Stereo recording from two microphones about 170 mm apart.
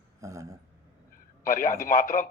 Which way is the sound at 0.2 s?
20° right (ahead or behind).